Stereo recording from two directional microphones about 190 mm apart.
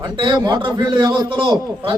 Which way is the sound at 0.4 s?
25° right (ahead or behind).